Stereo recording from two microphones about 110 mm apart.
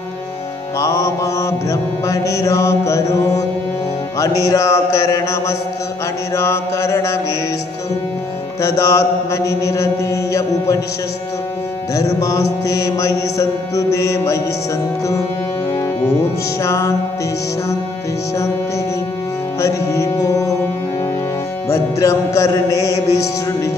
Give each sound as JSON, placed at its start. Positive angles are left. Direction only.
{"t": 0.7, "sound": "mantra", "side_deg": 30}
{"t": 8.5, "sound": "mantra", "side_deg": 25}
{"t": 11.9, "sound": "music", "side_deg": 30}
{"t": 12.6, "sound": "mantra", "side_deg": 30}
{"t": 16.6, "sound": "mantra", "side_deg": 25}
{"t": 19.6, "sound": "music", "side_deg": 25}
{"t": 21.6, "sound": "mantra", "side_deg": 25}